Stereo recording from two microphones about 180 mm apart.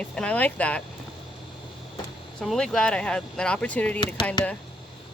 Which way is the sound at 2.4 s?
5° left (ahead or behind).